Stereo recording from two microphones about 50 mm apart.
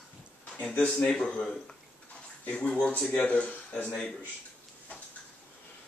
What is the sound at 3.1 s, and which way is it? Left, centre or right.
Speech, left.